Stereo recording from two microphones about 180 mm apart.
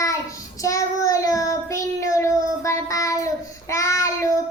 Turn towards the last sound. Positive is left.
turn(degrees=15)  # may be behind; listen again after turning